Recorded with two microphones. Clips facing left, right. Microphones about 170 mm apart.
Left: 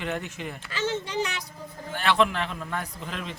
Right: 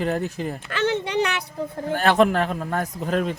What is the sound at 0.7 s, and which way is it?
Speech, 65° right (ahead or behind).